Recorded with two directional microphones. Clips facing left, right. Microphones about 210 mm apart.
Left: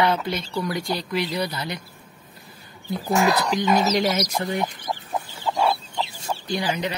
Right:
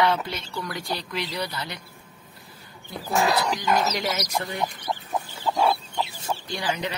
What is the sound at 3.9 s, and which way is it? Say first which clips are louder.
Speech: left 5 dB; 30° left (ahead or behind).